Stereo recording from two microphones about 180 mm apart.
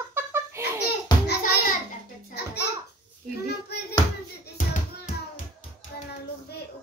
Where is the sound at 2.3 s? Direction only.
65° left (ahead or behind).